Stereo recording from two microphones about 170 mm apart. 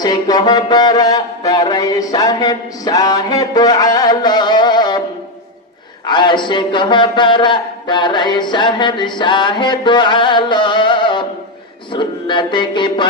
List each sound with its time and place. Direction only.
0.0 s a man's voice: 25° left (ahead or behind)
6.1 s a man's voice: 25° left (ahead or behind)